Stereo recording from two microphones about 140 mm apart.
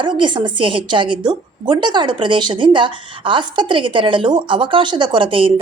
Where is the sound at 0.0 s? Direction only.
35° right (ahead or behind).